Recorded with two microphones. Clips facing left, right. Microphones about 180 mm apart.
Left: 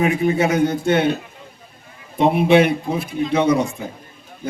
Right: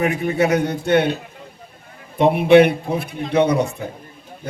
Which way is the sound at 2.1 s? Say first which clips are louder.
Right 2 dB; 60° right (ahead or behind).